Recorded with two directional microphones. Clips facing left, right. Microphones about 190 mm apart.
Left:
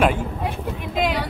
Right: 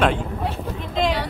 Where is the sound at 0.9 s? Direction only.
5° left (ahead or behind).